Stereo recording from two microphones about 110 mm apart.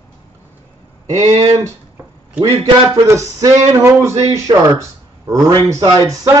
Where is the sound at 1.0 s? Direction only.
35° right (ahead or behind).